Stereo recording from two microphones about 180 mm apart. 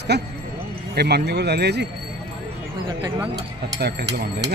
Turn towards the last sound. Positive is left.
turn(degrees=-65)  # may be behind; listen again after turning